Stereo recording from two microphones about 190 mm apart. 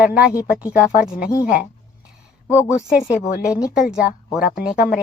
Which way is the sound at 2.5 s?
15° left (ahead or behind).